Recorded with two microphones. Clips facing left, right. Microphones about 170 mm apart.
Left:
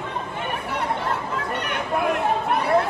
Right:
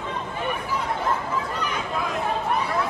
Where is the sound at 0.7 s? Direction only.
65° left (ahead or behind).